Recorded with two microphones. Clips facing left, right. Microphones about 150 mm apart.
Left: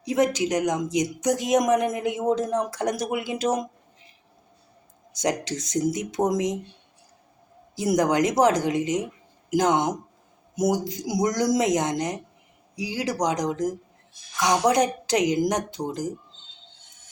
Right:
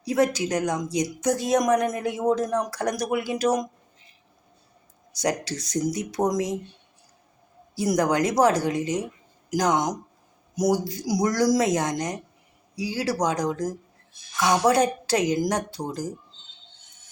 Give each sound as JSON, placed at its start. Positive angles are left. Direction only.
{"t": 0.0, "sound": "speech", "side_deg": 20}
{"t": 5.1, "sound": "speech", "side_deg": 20}
{"t": 7.8, "sound": "speech", "side_deg": 20}